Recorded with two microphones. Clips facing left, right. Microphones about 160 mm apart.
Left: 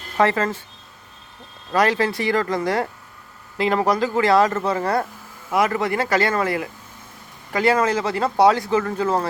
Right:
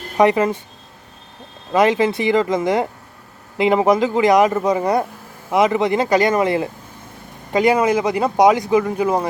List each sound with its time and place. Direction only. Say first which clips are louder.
0.2 s speech: right 5 dB; 15° right (ahead or behind)
1.7 s speech: right 4 dB; 20° right (ahead or behind)